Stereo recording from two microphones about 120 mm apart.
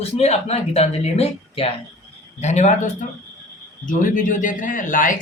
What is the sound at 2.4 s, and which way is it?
Speech, 75° left (ahead or behind).